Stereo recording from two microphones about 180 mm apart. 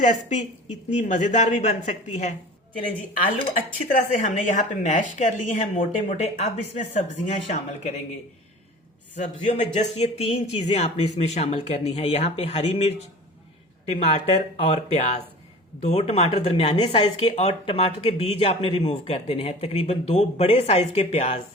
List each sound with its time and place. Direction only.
0.0 s speech: 40° left (ahead or behind)
3.8 s speech: 45° left (ahead or behind)
9.1 s speech: 40° left (ahead or behind)